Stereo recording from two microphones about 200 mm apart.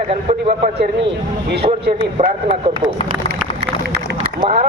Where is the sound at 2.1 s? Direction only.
30° right (ahead or behind).